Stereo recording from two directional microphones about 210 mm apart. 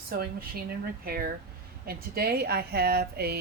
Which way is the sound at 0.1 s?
45° right (ahead or behind).